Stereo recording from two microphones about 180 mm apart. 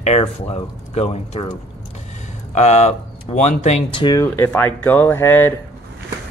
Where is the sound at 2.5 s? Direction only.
40° left (ahead or behind).